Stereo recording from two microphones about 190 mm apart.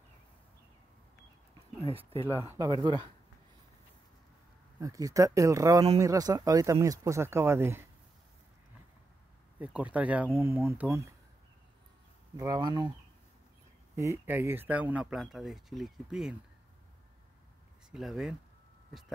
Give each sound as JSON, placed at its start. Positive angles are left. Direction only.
{"t": 1.9, "sound": "speech", "side_deg": -30}
{"t": 2.4, "sound": "speech", "side_deg": -15}
{"t": 4.7, "sound": "speech", "side_deg": -20}
{"t": 9.6, "sound": "speech", "side_deg": -5}
{"t": 12.4, "sound": "speech", "side_deg": -20}
{"t": 13.9, "sound": "speech", "side_deg": -15}
{"t": 17.9, "sound": "speech", "side_deg": -5}